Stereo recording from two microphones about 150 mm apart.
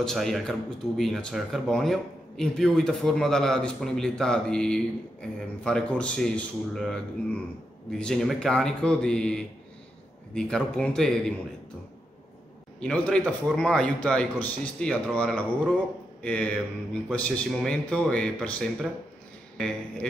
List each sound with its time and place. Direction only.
0.0 s speech: centre (ahead or behind)
12.8 s a man's voice: 5° left (ahead or behind)